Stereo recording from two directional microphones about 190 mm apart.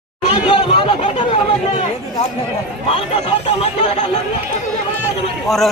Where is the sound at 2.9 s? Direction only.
30° left (ahead or behind).